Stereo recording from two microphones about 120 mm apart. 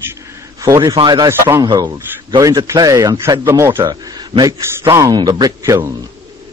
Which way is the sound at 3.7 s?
35° right (ahead or behind).